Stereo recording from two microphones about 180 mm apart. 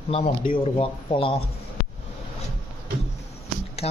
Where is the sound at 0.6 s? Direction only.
30° left (ahead or behind).